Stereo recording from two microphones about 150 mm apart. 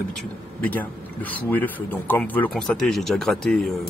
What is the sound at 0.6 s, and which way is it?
Speech, 10° left (ahead or behind).